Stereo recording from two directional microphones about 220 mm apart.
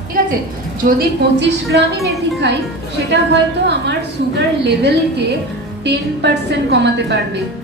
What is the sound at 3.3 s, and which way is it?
A woman's voice, 50° right (ahead or behind).